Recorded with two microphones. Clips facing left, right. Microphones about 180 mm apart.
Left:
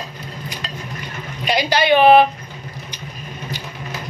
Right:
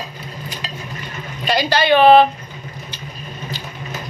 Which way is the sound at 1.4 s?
15° left (ahead or behind).